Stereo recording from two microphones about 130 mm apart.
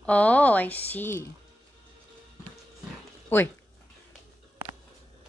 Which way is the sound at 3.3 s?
15° left (ahead or behind).